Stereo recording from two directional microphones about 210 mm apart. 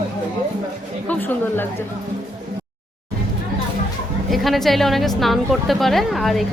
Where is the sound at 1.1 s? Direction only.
10° left (ahead or behind).